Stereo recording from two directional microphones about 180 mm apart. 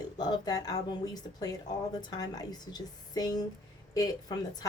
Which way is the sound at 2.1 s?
20° left (ahead or behind).